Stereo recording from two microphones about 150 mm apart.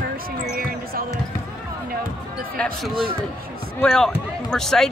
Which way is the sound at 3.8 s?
5° left (ahead or behind).